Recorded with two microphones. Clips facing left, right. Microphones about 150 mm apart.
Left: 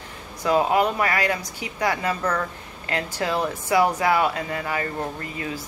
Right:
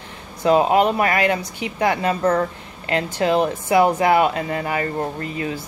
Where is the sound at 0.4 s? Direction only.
25° right (ahead or behind).